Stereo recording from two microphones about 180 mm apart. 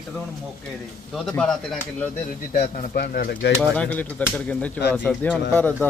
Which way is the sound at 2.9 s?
60° left (ahead or behind).